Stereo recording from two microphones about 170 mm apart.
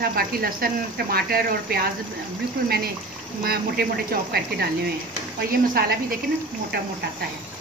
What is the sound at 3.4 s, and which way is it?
Speech, 60° right (ahead or behind).